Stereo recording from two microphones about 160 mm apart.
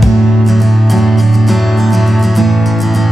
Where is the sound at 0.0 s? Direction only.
Centre (ahead or behind).